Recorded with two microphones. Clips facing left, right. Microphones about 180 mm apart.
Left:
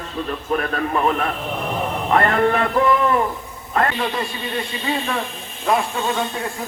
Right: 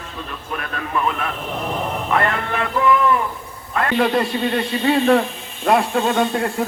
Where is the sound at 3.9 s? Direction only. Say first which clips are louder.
Right 6 dB; 55° right (ahead or behind).